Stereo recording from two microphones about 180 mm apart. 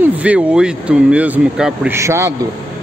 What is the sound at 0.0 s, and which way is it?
Speech, 5° right (ahead or behind).